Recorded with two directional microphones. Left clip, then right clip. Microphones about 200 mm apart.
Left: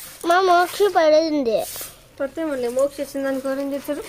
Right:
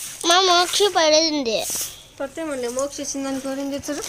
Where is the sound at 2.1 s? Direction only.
35° left (ahead or behind); by 4.0 s 5° left (ahead or behind).